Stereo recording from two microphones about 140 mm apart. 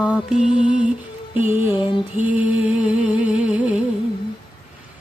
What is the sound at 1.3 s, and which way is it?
Music, 15° right (ahead or behind).